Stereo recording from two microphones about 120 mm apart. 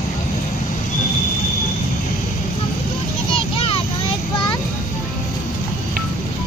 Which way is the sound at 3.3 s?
50° left (ahead or behind).